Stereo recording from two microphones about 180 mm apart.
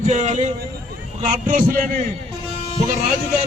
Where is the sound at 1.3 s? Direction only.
50° right (ahead or behind).